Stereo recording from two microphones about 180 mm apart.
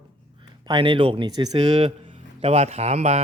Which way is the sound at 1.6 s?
40° right (ahead or behind).